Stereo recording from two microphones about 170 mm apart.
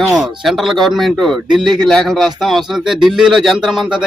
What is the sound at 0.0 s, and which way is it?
A man's voice, centre (ahead or behind).